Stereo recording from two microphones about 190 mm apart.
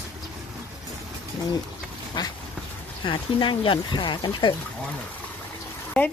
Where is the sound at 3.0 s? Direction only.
25° left (ahead or behind).